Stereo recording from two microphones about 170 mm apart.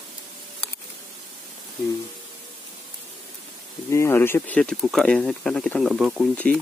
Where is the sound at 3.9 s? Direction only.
15° left (ahead or behind); by 6.3 s centre (ahead or behind).